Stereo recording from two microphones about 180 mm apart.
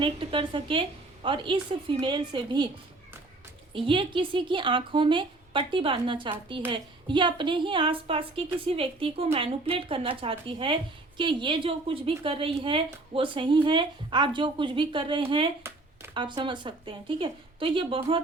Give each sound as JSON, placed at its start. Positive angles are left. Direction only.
{"t": 0.0, "sound": "a woman's voice", "side_deg": -30}
{"t": 3.7, "sound": "a woman's voice", "side_deg": -30}